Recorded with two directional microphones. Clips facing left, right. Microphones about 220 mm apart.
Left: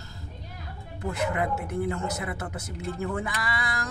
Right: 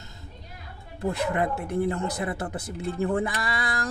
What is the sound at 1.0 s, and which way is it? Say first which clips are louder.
Speech: right 2 dB; 35° right (ahead or behind).